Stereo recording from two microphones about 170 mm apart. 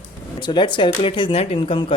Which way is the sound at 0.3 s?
25° left (ahead or behind).